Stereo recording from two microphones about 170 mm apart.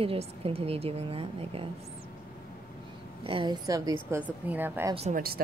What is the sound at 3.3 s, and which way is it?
Speech, 30° right (ahead or behind).